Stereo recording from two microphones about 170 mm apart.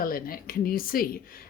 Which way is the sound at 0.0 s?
55° left (ahead or behind).